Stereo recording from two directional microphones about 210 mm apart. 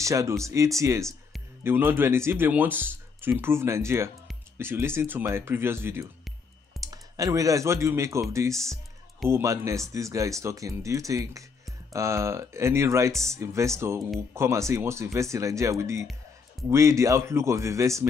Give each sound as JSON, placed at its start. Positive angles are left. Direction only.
{"t": 0.0, "sound": "speech", "side_deg": -15}